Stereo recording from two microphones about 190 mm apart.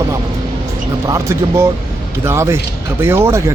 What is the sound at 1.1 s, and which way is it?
Speech, 15° right (ahead or behind).